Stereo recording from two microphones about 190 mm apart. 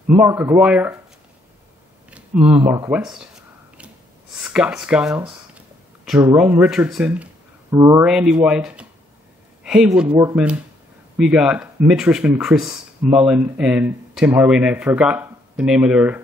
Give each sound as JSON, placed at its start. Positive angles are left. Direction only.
{"t": 0.1, "sound": "speech", "side_deg": -10}
{"t": 2.0, "sound": "speech", "side_deg": -5}
{"t": 3.0, "sound": "a sound", "side_deg": -5}
{"t": 4.4, "sound": "speech", "side_deg": -5}
{"t": 7.7, "sound": "speech", "side_deg": -15}
{"t": 8.0, "sound": "speech", "side_deg": -5}